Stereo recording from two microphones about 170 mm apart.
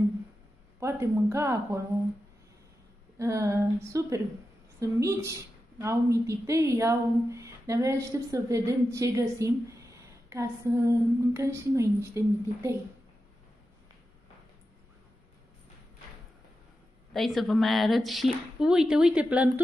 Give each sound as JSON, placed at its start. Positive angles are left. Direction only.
{"t": 0.7, "sound": "a woman's voice", "side_deg": -15}
{"t": 3.2, "sound": "a woman's voice", "side_deg": -15}
{"t": 17.1, "sound": "speech", "side_deg": 0}